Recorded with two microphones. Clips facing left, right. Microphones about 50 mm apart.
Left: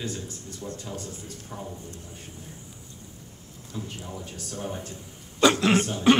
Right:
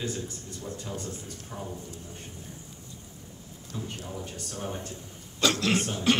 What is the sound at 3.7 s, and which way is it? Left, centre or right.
Speech, centre.